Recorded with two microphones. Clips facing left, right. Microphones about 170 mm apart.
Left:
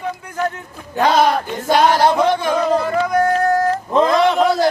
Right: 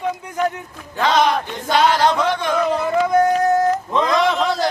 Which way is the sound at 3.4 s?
20° right (ahead or behind).